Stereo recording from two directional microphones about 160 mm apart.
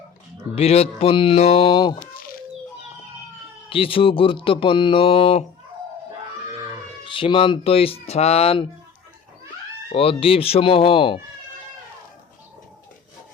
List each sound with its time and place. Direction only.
0.5 s speech: 40° left (ahead or behind)
3.7 s speech: 35° left (ahead or behind)
7.0 s speech: 30° left (ahead or behind)
9.9 s speech: 35° left (ahead or behind)